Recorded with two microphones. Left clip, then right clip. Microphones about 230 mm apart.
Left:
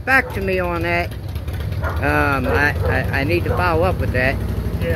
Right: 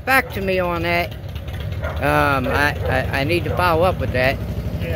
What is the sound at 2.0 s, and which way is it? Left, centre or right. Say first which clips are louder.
Speech: right 1 dB; right.